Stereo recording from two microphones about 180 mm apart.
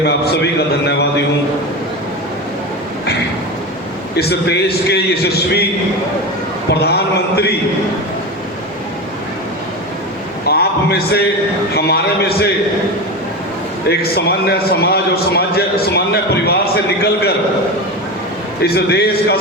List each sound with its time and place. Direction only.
0.0 s a man's voice: 70° left (ahead or behind)
4.1 s a man's voice: 65° left (ahead or behind)
6.7 s a man's voice: 65° left (ahead or behind)
10.4 s a sound: 60° left (ahead or behind)
11.7 s a man's voice: 65° left (ahead or behind)
13.8 s a man's voice: 65° left (ahead or behind)
18.6 s a man's voice: 65° left (ahead or behind)